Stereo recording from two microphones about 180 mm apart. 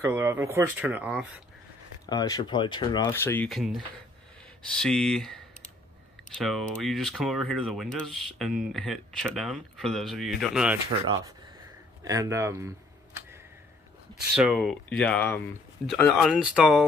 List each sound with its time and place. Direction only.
0.0 s speech: 10° right (ahead or behind)
2.0 s speech: 20° left (ahead or behind)
3.1 s speech: 15° left (ahead or behind)
3.4 s speech: centre (ahead or behind)
12.0 s speech: 20° right (ahead or behind)
14.3 s speech: 5° right (ahead or behind)
15.9 s speech: centre (ahead or behind)